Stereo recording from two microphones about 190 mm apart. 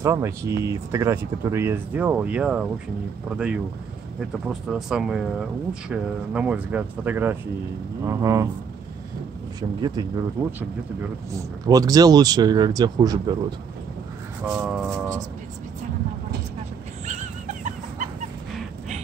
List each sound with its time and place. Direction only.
0.0 s speech: 15° right (ahead or behind)
9.6 s speech: 20° right (ahead or behind)
11.3 s speech: 20° right (ahead or behind)
14.4 s speech: 5° right (ahead or behind)
17.0 s a sound: 40° right (ahead or behind)